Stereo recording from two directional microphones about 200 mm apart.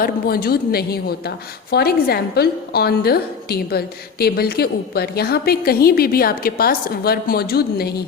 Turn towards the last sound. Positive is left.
turn(degrees=50)  # may be behind; listen again after turning